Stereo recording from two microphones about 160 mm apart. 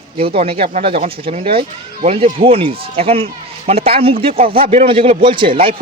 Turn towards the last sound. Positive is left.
turn(degrees=-35)  # may be behind; listen again after turning